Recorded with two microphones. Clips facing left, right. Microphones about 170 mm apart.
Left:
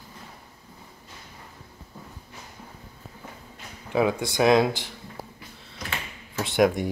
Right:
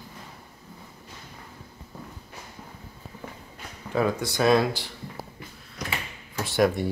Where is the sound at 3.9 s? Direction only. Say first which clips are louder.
Left 2 dB; 15° left (ahead or behind).